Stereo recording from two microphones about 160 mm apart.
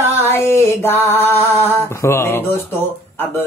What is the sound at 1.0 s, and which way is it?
A woman's voice, 15° left (ahead or behind).